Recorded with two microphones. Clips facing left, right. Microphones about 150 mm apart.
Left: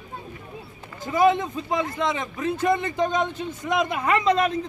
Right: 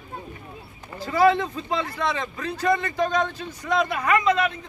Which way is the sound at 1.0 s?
20° left (ahead or behind).